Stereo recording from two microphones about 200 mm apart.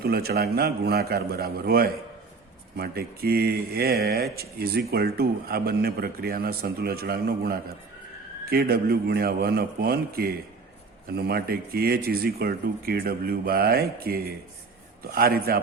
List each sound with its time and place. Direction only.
0.0 s speech: 50° right (ahead or behind)